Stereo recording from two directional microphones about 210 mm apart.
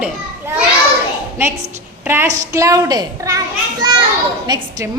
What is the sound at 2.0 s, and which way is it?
A woman's voice, 10° right (ahead or behind).